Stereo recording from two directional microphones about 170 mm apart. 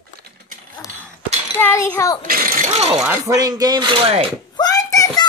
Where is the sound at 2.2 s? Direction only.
55° right (ahead or behind).